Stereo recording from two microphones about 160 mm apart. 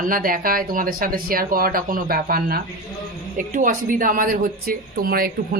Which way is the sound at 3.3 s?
55° right (ahead or behind).